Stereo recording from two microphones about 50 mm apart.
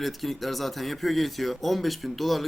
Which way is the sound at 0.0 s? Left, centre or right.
Centre.